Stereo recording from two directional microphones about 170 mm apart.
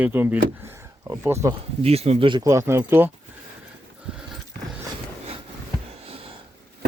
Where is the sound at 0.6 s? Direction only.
15° right (ahead or behind).